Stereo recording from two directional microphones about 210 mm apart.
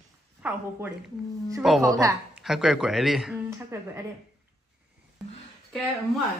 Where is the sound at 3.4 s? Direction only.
15° right (ahead or behind).